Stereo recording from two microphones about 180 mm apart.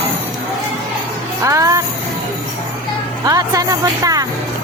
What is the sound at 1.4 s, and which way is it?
Music, 20° right (ahead or behind).